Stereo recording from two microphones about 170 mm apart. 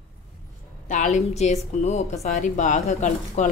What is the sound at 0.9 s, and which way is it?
A woman's voice, 45° left (ahead or behind).